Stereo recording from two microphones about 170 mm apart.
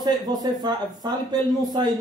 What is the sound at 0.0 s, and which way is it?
A man's voice, 25° right (ahead or behind).